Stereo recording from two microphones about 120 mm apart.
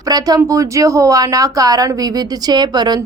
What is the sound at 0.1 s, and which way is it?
A woman's voice, 30° right (ahead or behind).